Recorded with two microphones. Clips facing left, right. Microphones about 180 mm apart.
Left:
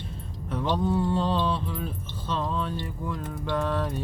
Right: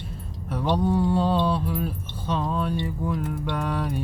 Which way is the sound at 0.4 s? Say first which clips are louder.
Right 3 dB; 10° right (ahead or behind).